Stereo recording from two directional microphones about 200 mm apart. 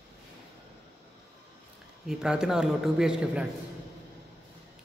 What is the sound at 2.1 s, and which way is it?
A man's voice, 5° right (ahead or behind).